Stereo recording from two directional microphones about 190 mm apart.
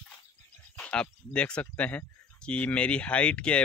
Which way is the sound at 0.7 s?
5° left (ahead or behind).